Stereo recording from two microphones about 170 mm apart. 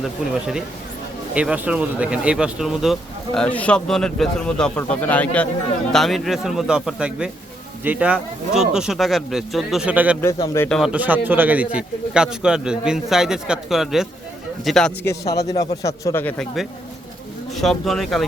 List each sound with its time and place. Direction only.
0.0 s speech: 5° right (ahead or behind)
10.2 s a man's voice: 20° left (ahead or behind)
10.7 s speech: centre (ahead or behind)
15.8 s a man's voice: 20° left (ahead or behind)
17.6 s speech: centre (ahead or behind)